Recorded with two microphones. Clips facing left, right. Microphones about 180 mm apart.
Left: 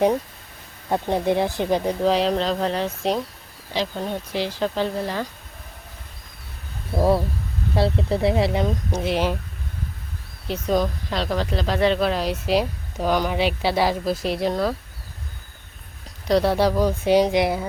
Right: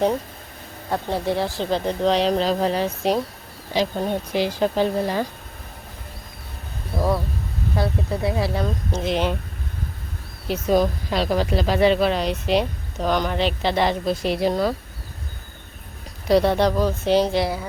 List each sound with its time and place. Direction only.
0.9 s speech: 20° left (ahead or behind); by 3.2 s 5° right (ahead or behind)
3.8 s speech: 15° right (ahead or behind)
7.8 s speech: 25° left (ahead or behind); by 9.3 s 5° left (ahead or behind)
10.5 s speech: 5° right (ahead or behind)
16.3 s speech: centre (ahead or behind); by 17.7 s 20° left (ahead or behind)